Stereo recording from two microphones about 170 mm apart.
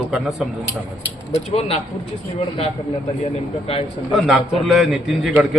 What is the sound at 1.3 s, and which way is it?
Speech, 35° left (ahead or behind).